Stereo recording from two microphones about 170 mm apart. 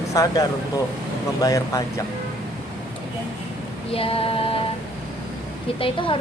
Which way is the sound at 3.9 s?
35° left (ahead or behind).